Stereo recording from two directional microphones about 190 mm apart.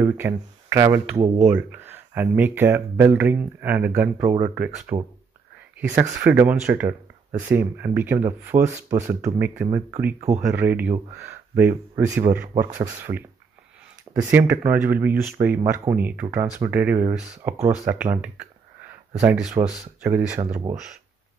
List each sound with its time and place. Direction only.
0.0 s speech: 10° right (ahead or behind)
4.9 s speech: 25° right (ahead or behind)
5.8 s speech: 10° right (ahead or behind)
14.2 s speech: 10° right (ahead or behind)